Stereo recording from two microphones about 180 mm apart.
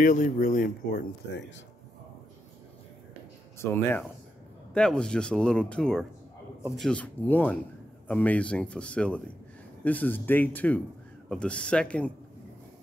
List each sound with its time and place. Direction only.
0.0 s speech: 45° left (ahead or behind)
3.5 s speech: 15° left (ahead or behind)